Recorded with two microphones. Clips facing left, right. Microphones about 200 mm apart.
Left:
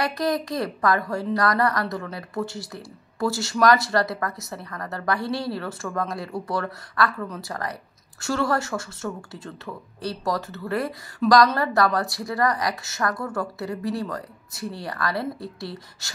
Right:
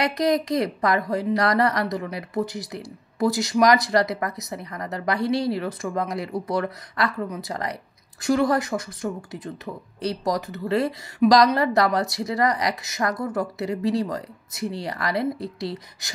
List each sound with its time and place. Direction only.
0.0 s speech: 20° right (ahead or behind)